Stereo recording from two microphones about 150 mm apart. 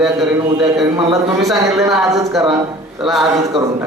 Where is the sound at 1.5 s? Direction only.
Centre (ahead or behind).